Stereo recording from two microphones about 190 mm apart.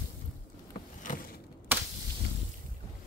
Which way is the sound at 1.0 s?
45° left (ahead or behind).